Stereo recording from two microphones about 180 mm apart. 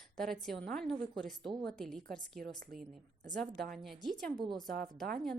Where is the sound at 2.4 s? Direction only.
55° right (ahead or behind).